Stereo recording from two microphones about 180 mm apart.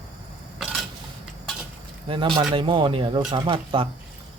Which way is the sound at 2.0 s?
30° right (ahead or behind).